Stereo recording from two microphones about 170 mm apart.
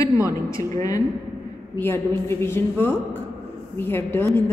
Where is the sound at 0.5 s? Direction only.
20° left (ahead or behind).